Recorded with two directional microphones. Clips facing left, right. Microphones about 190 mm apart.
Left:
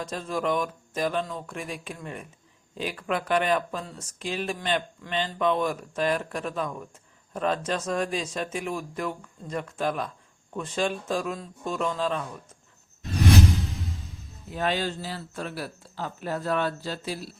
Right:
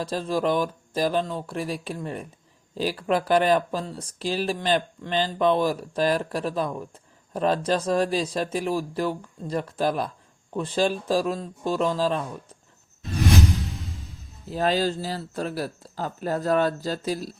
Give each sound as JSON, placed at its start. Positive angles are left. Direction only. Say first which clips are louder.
{"t": 0.0, "sound": "speech", "louder": "right 4 dB", "side_deg": -30}
{"t": 14.5, "sound": "speech", "louder": "right 4 dB", "side_deg": -35}